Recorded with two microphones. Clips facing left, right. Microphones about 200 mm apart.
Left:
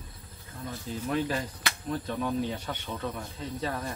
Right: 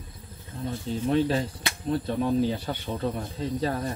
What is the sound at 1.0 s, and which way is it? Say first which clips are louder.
Speech: right 6 dB; 30° right (ahead or behind).